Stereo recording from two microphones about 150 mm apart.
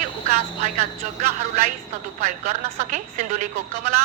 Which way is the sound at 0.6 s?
50° right (ahead or behind).